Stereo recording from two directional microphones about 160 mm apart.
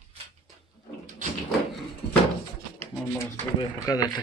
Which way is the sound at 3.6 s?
25° left (ahead or behind).